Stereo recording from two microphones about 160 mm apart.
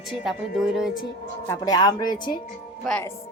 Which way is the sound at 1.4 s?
25° left (ahead or behind).